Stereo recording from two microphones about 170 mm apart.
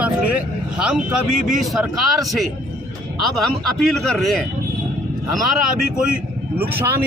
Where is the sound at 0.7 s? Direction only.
5° right (ahead or behind).